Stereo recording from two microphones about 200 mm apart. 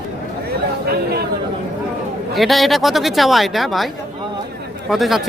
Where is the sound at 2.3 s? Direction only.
Centre (ahead or behind).